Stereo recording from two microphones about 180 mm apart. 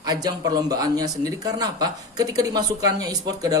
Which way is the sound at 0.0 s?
20° right (ahead or behind).